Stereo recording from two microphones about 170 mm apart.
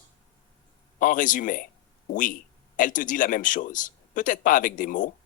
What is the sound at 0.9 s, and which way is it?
Speech, 50° left (ahead or behind).